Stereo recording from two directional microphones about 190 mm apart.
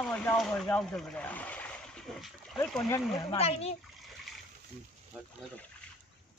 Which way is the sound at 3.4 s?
35° left (ahead or behind).